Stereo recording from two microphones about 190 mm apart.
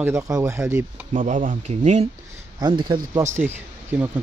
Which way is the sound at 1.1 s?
40° right (ahead or behind).